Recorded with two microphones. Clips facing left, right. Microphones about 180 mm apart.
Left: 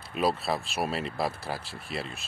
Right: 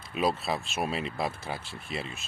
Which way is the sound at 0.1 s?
Centre (ahead or behind).